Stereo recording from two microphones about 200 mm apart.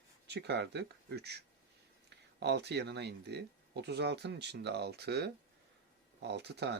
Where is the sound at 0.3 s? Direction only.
55° right (ahead or behind).